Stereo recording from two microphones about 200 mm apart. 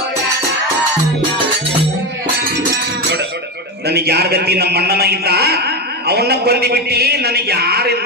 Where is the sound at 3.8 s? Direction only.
55° right (ahead or behind).